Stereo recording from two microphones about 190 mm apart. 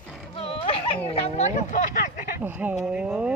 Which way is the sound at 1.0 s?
35° left (ahead or behind).